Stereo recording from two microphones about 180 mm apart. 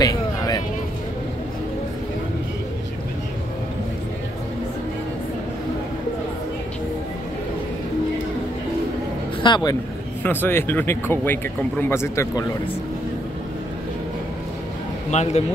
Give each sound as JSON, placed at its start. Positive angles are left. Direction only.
{"t": 0.0, "sound": "a sound", "side_deg": 20}
{"t": 9.4, "sound": "speech", "side_deg": 25}
{"t": 10.2, "sound": "speech", "side_deg": 10}
{"t": 15.0, "sound": "a man's voice", "side_deg": 40}